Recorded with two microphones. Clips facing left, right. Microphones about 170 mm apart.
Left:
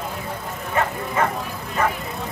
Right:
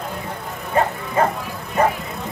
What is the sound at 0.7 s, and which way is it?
Bow-wow, 35° right (ahead or behind).